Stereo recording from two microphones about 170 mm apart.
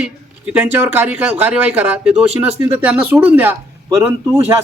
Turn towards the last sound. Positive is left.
turn(degrees=-15)  # may be behind; listen again after turning